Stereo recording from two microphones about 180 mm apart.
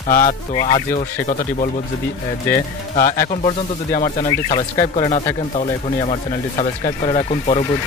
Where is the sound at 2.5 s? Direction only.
10° left (ahead or behind).